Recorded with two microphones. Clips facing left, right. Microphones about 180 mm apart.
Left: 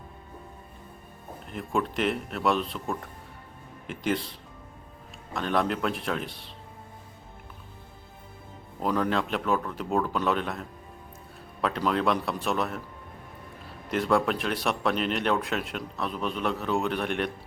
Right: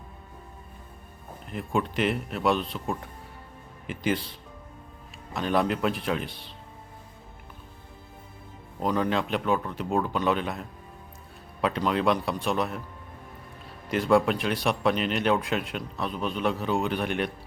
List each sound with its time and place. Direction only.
1.5 s speech: centre (ahead or behind)
8.9 s speech: 5° right (ahead or behind)
11.6 s speech: centre (ahead or behind)
13.9 s speech: centre (ahead or behind)